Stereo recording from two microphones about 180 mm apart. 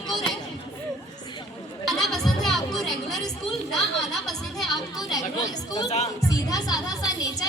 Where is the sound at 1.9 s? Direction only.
Centre (ahead or behind).